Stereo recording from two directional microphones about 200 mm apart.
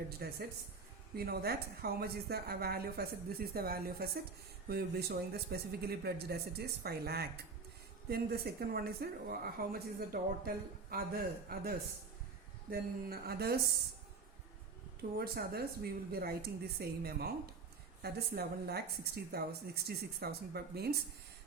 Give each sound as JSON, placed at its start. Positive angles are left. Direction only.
{"t": 0.2, "sound": "a woman's voice", "side_deg": -50}
{"t": 15.2, "sound": "a woman's voice", "side_deg": -50}